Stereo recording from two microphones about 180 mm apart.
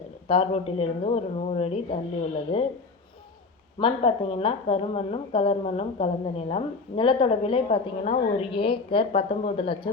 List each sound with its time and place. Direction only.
0.3 s a woman's voice: 35° left (ahead or behind)
3.8 s a woman's voice: 30° left (ahead or behind)